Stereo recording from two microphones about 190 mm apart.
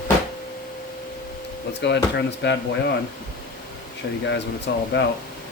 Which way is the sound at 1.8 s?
70° left (ahead or behind).